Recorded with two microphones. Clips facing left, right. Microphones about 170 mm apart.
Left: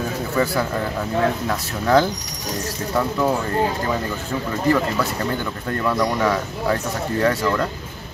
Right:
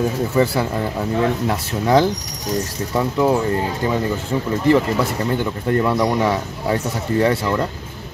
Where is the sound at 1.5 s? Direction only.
20° right (ahead or behind).